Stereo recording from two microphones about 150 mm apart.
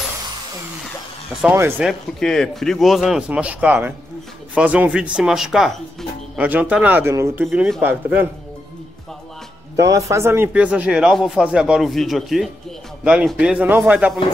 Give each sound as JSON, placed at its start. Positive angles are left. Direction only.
{"t": 1.5, "sound": "speech", "side_deg": -15}
{"t": 1.9, "sound": "a man's voice", "side_deg": 5}
{"t": 7.5, "sound": "a man's voice", "side_deg": 0}
{"t": 7.8, "sound": "speech", "side_deg": -10}
{"t": 9.8, "sound": "speech", "side_deg": -20}